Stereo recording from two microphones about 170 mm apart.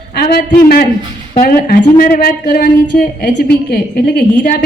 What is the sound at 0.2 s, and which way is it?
A man's voice, 65° left (ahead or behind).